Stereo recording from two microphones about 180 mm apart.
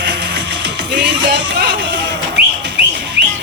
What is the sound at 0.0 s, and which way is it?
Music, 70° right (ahead or behind).